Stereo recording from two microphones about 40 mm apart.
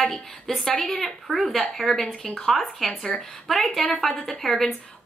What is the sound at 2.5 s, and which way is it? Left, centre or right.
A woman's voice, centre.